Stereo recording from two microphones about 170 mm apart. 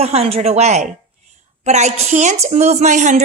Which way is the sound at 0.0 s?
35° right (ahead or behind).